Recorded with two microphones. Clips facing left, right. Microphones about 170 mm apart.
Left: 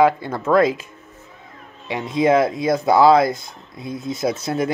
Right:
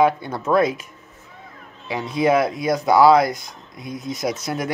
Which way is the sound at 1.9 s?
20° left (ahead or behind).